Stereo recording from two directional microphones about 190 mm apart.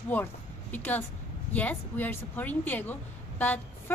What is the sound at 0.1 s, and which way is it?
A woman's voice, 10° left (ahead or behind).